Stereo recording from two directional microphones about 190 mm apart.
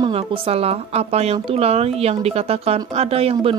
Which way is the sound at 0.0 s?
30° right (ahead or behind).